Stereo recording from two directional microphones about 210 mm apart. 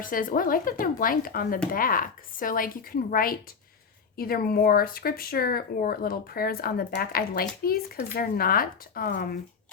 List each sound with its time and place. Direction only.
0.0 s speech: 40° left (ahead or behind)